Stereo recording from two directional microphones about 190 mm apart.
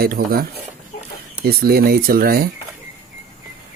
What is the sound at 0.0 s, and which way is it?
Speech, 50° right (ahead or behind).